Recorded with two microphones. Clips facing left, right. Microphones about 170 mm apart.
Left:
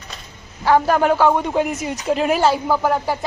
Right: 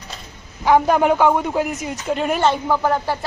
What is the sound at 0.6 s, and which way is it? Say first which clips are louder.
Speech: right 1 dB; 15° right (ahead or behind).